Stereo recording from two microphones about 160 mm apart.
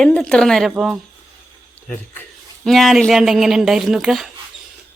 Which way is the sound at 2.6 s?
Centre (ahead or behind).